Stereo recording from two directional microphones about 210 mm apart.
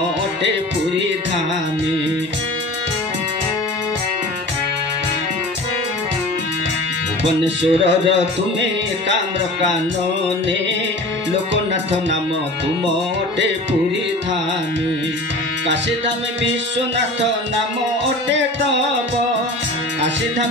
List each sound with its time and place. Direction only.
7.4 s music: 60° right (ahead or behind)
16.7 s music: 60° right (ahead or behind)